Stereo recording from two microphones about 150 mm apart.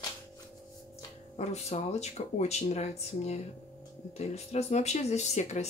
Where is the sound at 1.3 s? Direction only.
45° left (ahead or behind).